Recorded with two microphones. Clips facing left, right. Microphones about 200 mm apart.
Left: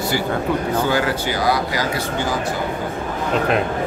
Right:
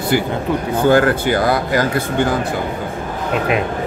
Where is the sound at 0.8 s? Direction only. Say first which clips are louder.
Right 7 dB; 55° right (ahead or behind).